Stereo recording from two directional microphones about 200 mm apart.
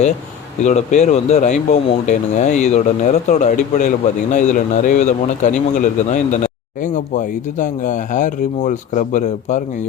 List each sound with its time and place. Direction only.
0.6 s speech: 35° left (ahead or behind)